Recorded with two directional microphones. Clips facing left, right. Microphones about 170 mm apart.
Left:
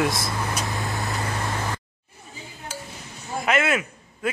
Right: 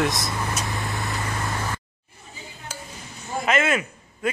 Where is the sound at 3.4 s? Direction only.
5° left (ahead or behind).